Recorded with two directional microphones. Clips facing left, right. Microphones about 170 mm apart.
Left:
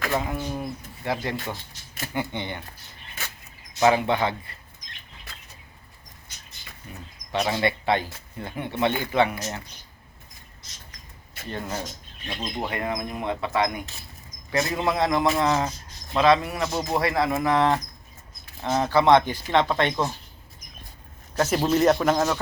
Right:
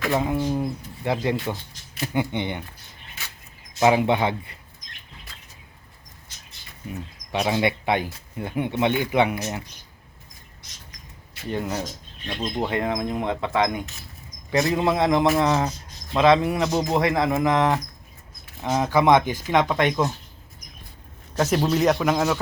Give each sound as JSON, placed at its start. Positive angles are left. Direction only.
{"t": 0.1, "sound": "speech", "side_deg": -20}
{"t": 3.8, "sound": "speech", "side_deg": -15}
{"t": 7.3, "sound": "speech", "side_deg": -10}
{"t": 11.4, "sound": "speech", "side_deg": -15}
{"t": 21.3, "sound": "a man's voice", "side_deg": 0}